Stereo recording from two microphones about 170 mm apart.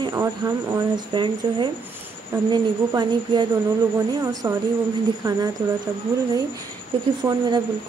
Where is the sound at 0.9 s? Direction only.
30° right (ahead or behind).